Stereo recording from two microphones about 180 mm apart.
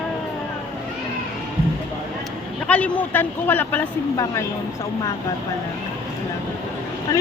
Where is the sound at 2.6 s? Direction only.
5° left (ahead or behind).